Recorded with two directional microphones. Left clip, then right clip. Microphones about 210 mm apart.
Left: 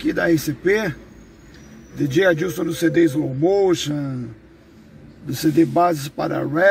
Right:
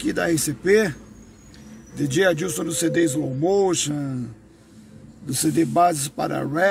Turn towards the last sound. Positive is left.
turn(degrees=-15)  # may be behind; listen again after turning